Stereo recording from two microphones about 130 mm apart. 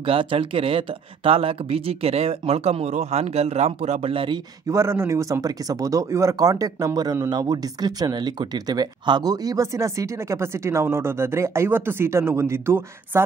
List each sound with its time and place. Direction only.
0.0 s speech: 45° right (ahead or behind)
4.6 s speech: 20° right (ahead or behind)